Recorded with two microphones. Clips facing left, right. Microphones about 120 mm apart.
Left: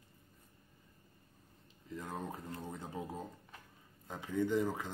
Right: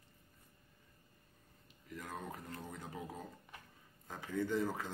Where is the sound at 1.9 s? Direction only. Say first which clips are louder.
Left 3 dB; 25° left (ahead or behind).